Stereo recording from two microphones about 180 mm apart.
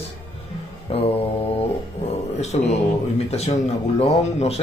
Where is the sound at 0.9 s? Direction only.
30° left (ahead or behind).